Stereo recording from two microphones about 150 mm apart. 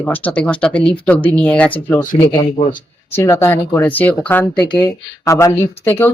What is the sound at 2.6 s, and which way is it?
Speech, 35° left (ahead or behind).